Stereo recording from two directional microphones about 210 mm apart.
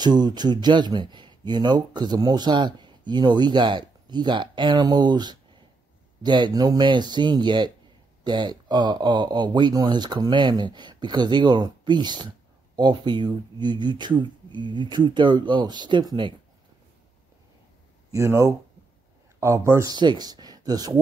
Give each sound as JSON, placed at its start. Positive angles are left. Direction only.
{"t": 0.0, "sound": "speech", "side_deg": -20}
{"t": 18.1, "sound": "speech", "side_deg": -15}